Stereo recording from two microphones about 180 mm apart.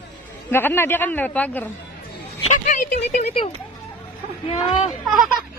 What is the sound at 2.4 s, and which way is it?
A woman's voice, 40° left (ahead or behind).